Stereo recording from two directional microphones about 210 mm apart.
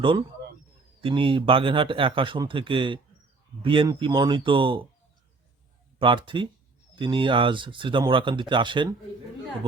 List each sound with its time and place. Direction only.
0.0 s speech: 25° right (ahead or behind)
6.0 s speech: 25° right (ahead or behind)